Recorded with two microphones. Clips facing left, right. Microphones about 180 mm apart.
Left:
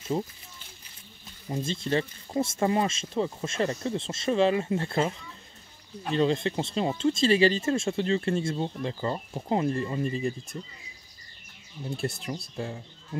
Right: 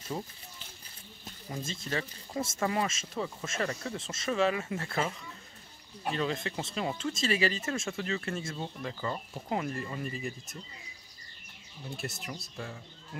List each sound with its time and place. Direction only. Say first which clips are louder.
1.7 s speech: left 8 dB; 30° left (ahead or behind)
6.1 s speech: left 9 dB; 30° left (ahead or behind)
12.0 s speech: left 7 dB; 30° left (ahead or behind)